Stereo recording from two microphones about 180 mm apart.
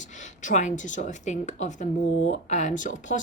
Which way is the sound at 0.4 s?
45° left (ahead or behind).